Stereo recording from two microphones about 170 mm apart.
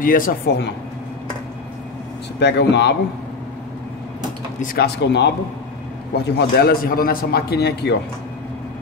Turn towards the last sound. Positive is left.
turn(degrees=75)  # may be behind; listen again after turning